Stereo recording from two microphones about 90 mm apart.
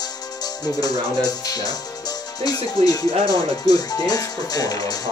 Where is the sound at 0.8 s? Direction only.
45° left (ahead or behind).